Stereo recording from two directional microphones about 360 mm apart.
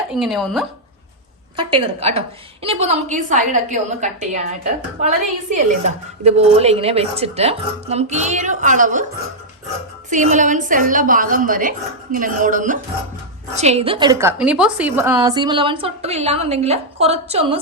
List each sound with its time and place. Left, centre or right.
0.1 s speech: centre
1.5 s a woman's voice: centre
10.1 s a woman's voice: right